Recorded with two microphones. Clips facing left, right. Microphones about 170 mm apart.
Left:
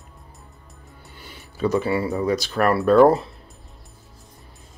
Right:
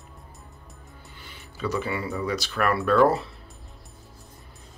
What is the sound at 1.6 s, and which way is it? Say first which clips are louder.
Speech: left 7 dB; 40° left (ahead or behind).